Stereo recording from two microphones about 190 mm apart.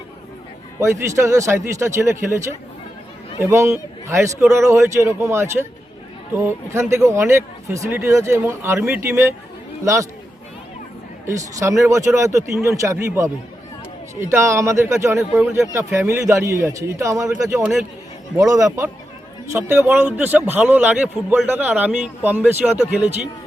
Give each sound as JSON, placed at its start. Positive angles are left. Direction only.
{"t": 0.8, "sound": "a man's voice", "side_deg": -15}
{"t": 11.3, "sound": "a man's voice", "side_deg": -15}
{"t": 17.5, "sound": "speech", "side_deg": -5}
{"t": 18.3, "sound": "a man's voice", "side_deg": -20}